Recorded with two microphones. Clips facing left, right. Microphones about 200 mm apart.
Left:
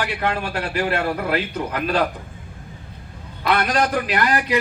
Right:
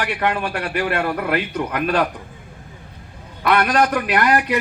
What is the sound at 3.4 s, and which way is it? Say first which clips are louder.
A man's voice: right 3 dB; 60° right (ahead or behind).